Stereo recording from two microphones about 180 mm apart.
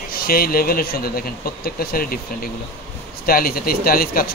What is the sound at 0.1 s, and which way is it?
Speech, 55° left (ahead or behind).